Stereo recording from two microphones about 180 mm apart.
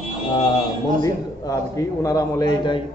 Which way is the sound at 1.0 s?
20° left (ahead or behind).